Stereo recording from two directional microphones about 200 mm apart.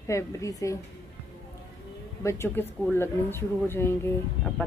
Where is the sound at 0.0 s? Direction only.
15° left (ahead or behind).